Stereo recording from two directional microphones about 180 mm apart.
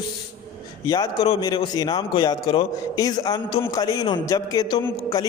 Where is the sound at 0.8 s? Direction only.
20° left (ahead or behind).